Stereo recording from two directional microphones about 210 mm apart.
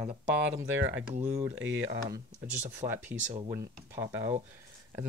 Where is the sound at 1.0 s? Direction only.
35° right (ahead or behind).